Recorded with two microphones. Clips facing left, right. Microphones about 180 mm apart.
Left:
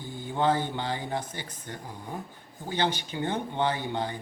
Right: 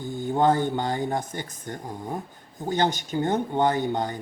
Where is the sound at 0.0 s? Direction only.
45° right (ahead or behind).